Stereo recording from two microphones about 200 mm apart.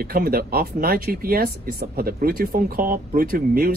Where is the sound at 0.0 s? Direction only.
45° right (ahead or behind).